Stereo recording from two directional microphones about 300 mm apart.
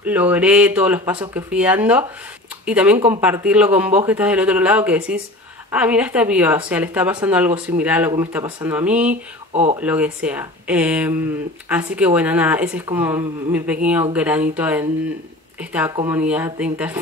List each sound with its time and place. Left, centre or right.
0.0 s speech: centre
9.5 s speech: right
9.8 s speech: centre
16.0 s speech: centre